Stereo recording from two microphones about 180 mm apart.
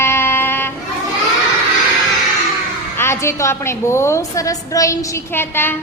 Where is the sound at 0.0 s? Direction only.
15° left (ahead or behind).